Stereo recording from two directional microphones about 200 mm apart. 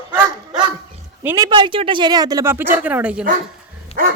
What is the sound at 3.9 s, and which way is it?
Dog, 30° left (ahead or behind).